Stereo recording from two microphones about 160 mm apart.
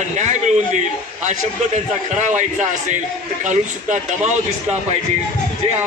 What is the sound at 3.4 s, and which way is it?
Speech, 50° right (ahead or behind).